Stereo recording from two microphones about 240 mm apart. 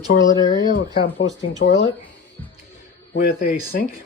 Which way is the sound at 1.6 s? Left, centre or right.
Left.